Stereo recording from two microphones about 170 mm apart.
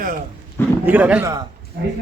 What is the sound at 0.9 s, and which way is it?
Speech, 10° right (ahead or behind).